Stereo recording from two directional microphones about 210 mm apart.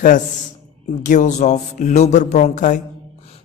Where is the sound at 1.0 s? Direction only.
35° left (ahead or behind).